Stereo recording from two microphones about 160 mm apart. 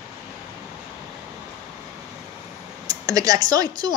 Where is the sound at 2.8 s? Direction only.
20° right (ahead or behind).